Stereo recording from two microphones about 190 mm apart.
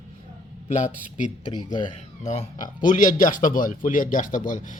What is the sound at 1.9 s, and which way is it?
A man's voice, 40° left (ahead or behind).